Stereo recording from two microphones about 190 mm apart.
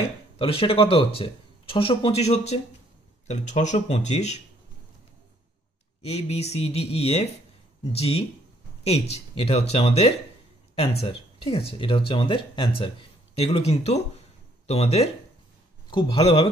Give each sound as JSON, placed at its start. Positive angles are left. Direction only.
{"t": 0.4, "sound": "speech", "side_deg": 30}
{"t": 6.0, "sound": "speech", "side_deg": 35}